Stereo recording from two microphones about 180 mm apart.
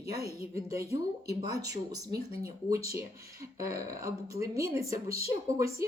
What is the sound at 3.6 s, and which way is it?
Speech, 20° right (ahead or behind).